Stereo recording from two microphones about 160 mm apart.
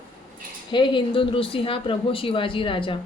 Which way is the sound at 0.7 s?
30° left (ahead or behind).